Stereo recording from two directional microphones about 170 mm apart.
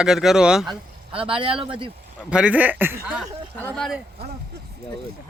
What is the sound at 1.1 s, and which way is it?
Speech, 30° right (ahead or behind).